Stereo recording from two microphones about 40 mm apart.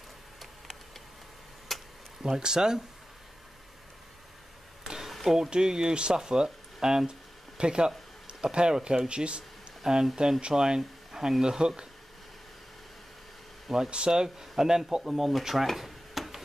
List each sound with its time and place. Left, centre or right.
1.7 s a sound: centre
2.2 s speech: centre
4.8 s a sound: centre
5.1 s speech: centre
5.5 s speech: centre
9.8 s speech: centre
13.8 s speech: right
15.4 s drawer open or close: centre